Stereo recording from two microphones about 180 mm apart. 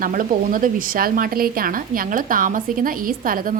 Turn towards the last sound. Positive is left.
turn(degrees=-50)  # may be behind; listen again after turning